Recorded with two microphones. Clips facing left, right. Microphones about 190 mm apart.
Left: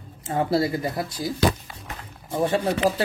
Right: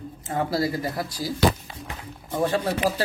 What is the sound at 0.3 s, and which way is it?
Speech, 30° left (ahead or behind).